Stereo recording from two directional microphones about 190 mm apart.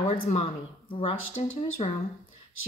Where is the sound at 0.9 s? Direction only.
30° left (ahead or behind).